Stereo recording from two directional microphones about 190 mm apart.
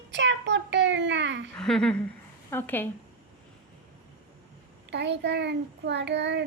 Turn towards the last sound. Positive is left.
turn(degrees=-65)  # may be behind; listen again after turning